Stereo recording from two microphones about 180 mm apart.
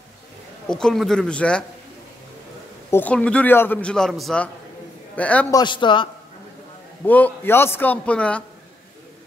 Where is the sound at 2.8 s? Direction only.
10° left (ahead or behind).